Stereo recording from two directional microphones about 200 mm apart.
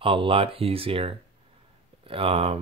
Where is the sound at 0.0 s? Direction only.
25° right (ahead or behind).